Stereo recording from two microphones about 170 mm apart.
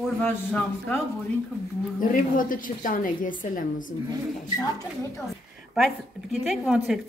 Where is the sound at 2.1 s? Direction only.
55° left (ahead or behind).